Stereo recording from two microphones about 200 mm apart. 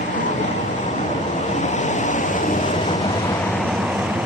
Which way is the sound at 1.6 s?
35° left (ahead or behind).